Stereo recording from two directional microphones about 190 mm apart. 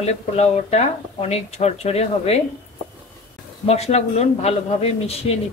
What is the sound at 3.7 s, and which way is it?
Speech, 35° left (ahead or behind).